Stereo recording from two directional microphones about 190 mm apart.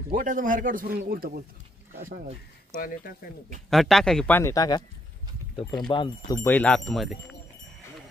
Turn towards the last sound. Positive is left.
turn(degrees=0)  # may be behind; listen again after turning